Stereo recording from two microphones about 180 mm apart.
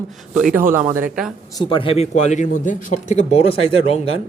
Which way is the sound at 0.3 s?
5° right (ahead or behind).